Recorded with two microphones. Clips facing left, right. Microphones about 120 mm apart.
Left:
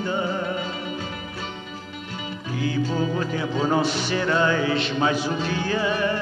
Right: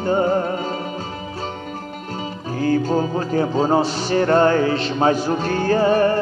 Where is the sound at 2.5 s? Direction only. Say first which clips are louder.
Right 6 dB; 45° right (ahead or behind).